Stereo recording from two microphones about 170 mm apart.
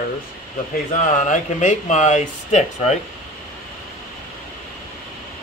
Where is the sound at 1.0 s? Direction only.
45° left (ahead or behind).